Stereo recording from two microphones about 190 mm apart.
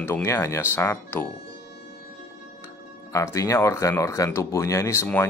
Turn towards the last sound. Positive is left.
turn(degrees=15)  # may be behind; listen again after turning